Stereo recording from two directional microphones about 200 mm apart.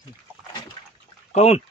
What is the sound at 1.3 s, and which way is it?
Speech, 30° left (ahead or behind).